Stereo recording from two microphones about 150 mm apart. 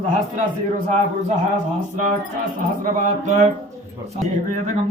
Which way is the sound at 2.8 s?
50° right (ahead or behind).